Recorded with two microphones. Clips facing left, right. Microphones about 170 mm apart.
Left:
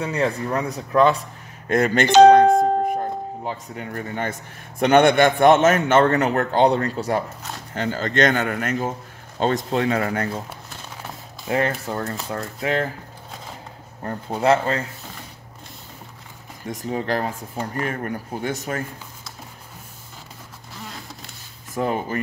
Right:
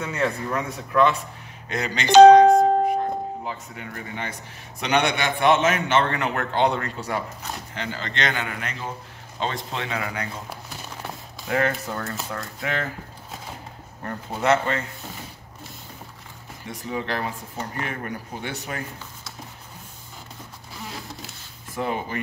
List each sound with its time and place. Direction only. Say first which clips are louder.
0.0 s speech: left 3 dB; 35° left (ahead or behind)
1.7 s a man's voice: left 3 dB; 50° left (ahead or behind)
3.4 s a man's voice: left 4 dB; 40° left (ahead or behind)
11.4 s speech: left 2 dB; 30° left (ahead or behind)
14.0 s speech: left 3 dB; 30° left (ahead or behind)
16.6 s a man's voice: left 4 dB; 45° left (ahead or behind)
21.7 s a man's voice: left 4 dB; 40° left (ahead or behind)